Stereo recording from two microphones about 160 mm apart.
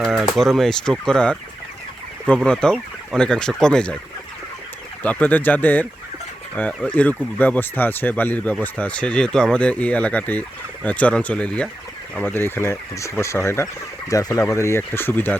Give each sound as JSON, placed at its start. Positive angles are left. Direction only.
{"t": 0.0, "sound": "a sound", "side_deg": 0}
{"t": 0.3, "sound": "speech", "side_deg": 0}
{"t": 5.0, "sound": "speech", "side_deg": 10}